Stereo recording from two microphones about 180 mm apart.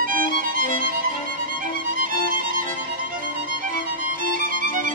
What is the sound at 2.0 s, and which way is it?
Music, 50° right (ahead or behind).